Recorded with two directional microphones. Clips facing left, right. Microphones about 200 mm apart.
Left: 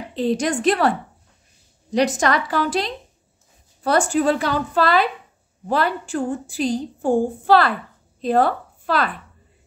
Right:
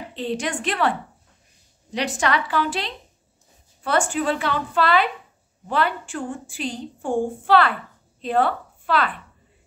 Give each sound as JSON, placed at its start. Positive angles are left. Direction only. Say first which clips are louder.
{"t": 0.1, "sound": "a woman's voice", "louder": "left 6 dB", "side_deg": 40}
{"t": 2.0, "sound": "a woman's voice", "louder": "left 5 dB", "side_deg": 40}